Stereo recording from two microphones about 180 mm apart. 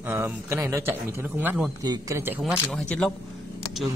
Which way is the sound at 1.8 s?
20° right (ahead or behind).